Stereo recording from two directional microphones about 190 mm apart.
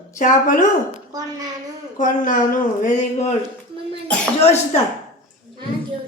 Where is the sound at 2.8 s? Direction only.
40° left (ahead or behind).